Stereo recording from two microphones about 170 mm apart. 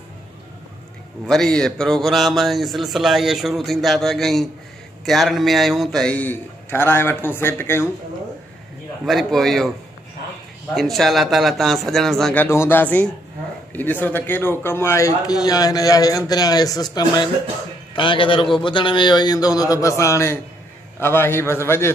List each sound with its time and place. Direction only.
1.2 s a man's voice: 5° left (ahead or behind)
9.0 s speech: centre (ahead or behind)
10.7 s speech: centre (ahead or behind)
12.4 s a man's voice: 15° left (ahead or behind)